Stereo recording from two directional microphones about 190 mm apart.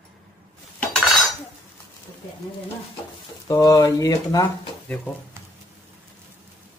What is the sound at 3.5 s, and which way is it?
Speech, 20° left (ahead or behind).